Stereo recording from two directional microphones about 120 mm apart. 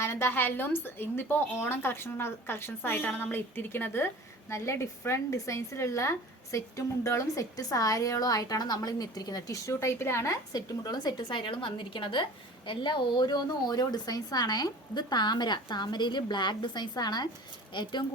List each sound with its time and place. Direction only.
0.0 s a woman's voice: 20° left (ahead or behind)
10.5 s a woman's voice: 35° left (ahead or behind)